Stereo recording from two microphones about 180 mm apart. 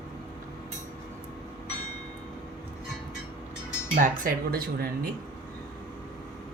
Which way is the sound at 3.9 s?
50° right (ahead or behind).